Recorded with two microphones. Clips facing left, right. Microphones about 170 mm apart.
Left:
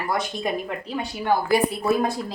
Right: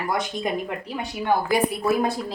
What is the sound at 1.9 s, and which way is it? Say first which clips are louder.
Speech: left 1 dB; 5° right (ahead or behind).